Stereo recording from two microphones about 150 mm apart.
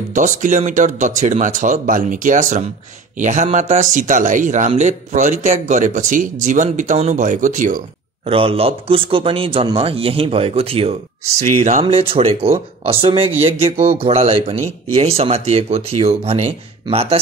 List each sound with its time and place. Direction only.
0.1 s speech: 60° right (ahead or behind)
8.3 s speech: 40° right (ahead or behind)
11.8 s speech: 35° right (ahead or behind)